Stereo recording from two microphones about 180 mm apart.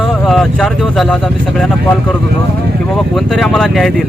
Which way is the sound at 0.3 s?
Centre (ahead or behind).